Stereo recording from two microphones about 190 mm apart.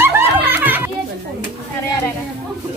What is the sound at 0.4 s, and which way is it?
Children playing, 10° right (ahead or behind).